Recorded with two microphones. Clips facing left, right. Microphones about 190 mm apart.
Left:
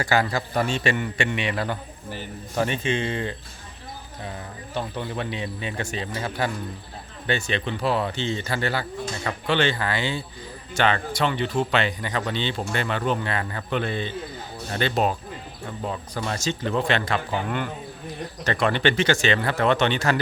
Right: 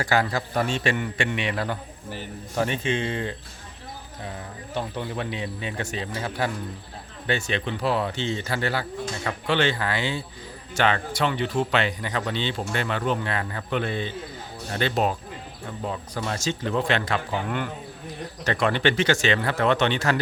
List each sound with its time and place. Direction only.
0.0 s speech: centre (ahead or behind)
4.7 s speech: 10° right (ahead or behind)
18.4 s speech: 5° right (ahead or behind)